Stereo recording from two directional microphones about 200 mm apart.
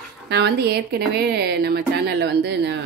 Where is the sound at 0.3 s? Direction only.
55° right (ahead or behind).